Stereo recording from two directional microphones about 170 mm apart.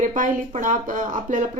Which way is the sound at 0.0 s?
50° right (ahead or behind).